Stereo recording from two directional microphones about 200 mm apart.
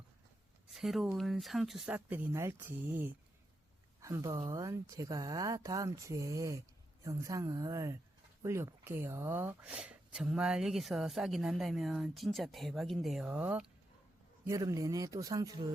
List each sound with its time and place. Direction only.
0.7 s speech: centre (ahead or behind); by 15.6 s 20° right (ahead or behind)